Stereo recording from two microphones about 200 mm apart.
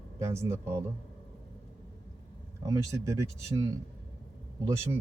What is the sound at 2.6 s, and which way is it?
Speech, 15° right (ahead or behind).